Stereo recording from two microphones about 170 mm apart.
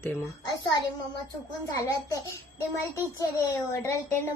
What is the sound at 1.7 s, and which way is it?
A child's voice, 15° left (ahead or behind).